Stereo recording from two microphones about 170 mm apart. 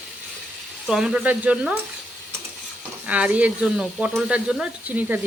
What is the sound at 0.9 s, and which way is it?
Speech, centre (ahead or behind).